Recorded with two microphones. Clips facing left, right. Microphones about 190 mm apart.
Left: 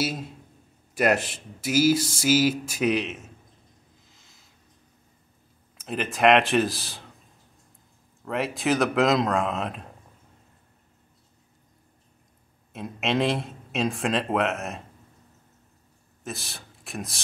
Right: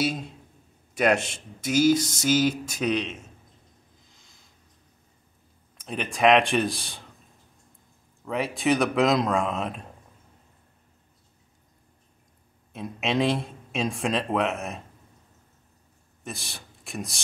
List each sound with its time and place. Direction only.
0.0 s speech: 5° left (ahead or behind)
5.8 s speech: centre (ahead or behind)
8.3 s speech: centre (ahead or behind)
12.7 s speech: centre (ahead or behind)
16.3 s speech: centre (ahead or behind)